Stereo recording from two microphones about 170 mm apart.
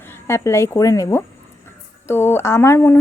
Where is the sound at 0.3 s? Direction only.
15° left (ahead or behind).